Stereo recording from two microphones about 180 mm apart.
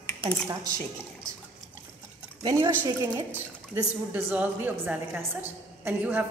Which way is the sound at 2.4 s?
20° right (ahead or behind).